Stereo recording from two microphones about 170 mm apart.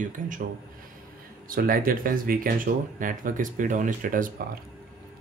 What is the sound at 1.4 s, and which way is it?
A man's voice, 55° right (ahead or behind).